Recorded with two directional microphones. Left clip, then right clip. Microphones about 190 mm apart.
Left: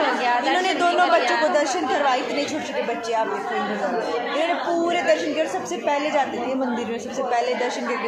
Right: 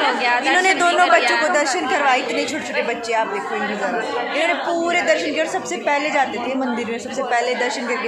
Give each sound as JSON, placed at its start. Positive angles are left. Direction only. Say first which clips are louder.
{"t": 0.2, "sound": "a sound", "louder": "right 3 dB", "side_deg": 15}
{"t": 0.6, "sound": "a woman's voice", "louder": "right 4 dB", "side_deg": -15}
{"t": 4.4, "sound": "a woman's voice", "louder": "right 3 dB", "side_deg": -15}